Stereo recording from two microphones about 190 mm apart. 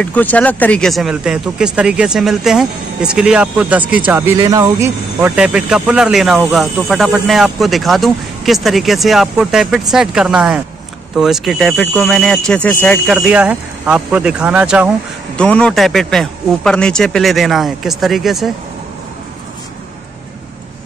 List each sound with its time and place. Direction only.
0.0 s speech: 10° left (ahead or behind)
15.3 s speech: 5° left (ahead or behind)